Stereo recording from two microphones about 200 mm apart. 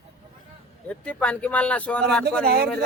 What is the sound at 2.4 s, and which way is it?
Speech, 50° right (ahead or behind).